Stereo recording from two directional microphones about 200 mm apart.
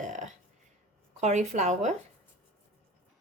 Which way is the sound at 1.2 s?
35° right (ahead or behind).